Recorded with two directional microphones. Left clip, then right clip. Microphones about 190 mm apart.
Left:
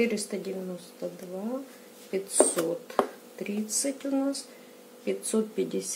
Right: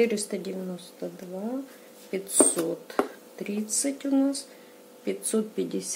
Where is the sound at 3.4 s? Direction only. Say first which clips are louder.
Right 1 dB; 15° right (ahead or behind).